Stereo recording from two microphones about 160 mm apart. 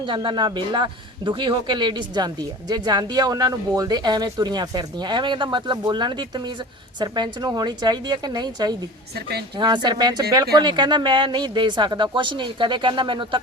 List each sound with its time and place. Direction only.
0.0 s a man's voice: 30° right (ahead or behind)